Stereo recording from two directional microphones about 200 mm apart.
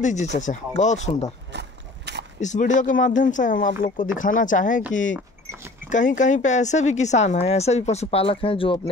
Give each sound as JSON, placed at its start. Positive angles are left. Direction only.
{"t": 0.0, "sound": "speech", "side_deg": 35}
{"t": 1.5, "sound": "a sound", "side_deg": -60}
{"t": 2.4, "sound": "speech", "side_deg": 40}
{"t": 5.9, "sound": "speech", "side_deg": 40}